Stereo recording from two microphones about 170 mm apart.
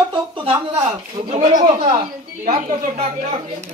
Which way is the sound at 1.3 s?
45° right (ahead or behind).